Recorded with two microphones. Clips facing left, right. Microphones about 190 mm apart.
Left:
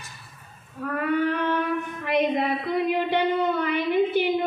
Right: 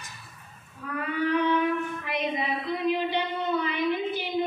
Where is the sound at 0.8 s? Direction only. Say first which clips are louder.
Left 5 dB; 50° left (ahead or behind).